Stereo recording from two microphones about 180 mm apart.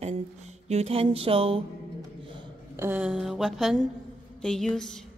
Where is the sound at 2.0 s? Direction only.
25° right (ahead or behind).